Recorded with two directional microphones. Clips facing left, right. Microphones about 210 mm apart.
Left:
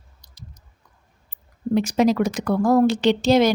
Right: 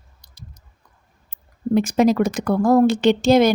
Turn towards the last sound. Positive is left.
turn(degrees=-50)  # may be behind; listen again after turning